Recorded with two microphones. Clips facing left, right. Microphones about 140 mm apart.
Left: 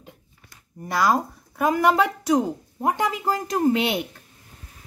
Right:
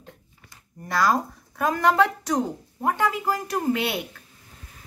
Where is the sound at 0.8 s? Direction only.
15° left (ahead or behind).